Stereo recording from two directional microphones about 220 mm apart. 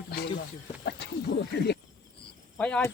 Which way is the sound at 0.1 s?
45° left (ahead or behind).